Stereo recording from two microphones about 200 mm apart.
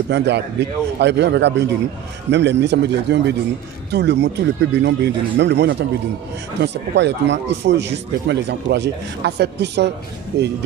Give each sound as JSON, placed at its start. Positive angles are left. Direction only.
{"t": 0.1, "sound": "speech", "side_deg": -60}